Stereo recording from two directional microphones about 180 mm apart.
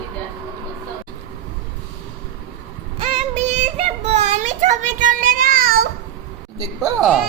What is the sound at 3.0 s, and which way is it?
Music, 35° right (ahead or behind).